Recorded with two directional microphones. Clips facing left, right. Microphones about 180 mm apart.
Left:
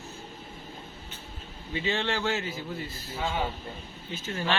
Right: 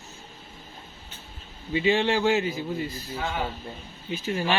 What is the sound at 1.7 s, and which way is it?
A man's voice, 15° right (ahead or behind).